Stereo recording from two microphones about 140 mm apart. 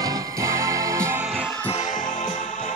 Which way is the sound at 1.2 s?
10° right (ahead or behind).